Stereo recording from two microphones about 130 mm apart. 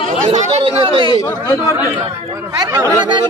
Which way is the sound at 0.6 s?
45° right (ahead or behind).